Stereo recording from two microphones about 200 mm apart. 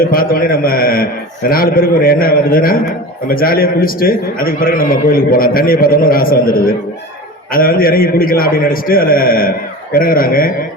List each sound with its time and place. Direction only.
0.0 s a man's voice: 45° left (ahead or behind)